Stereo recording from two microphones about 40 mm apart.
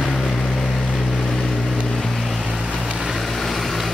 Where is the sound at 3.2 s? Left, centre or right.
Centre.